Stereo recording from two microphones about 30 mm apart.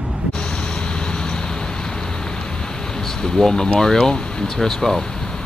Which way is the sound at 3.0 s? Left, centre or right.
Centre.